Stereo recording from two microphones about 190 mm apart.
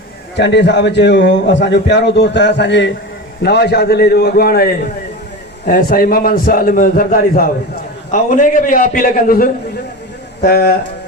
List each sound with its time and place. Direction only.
0.3 s a man's voice: 65° left (ahead or behind)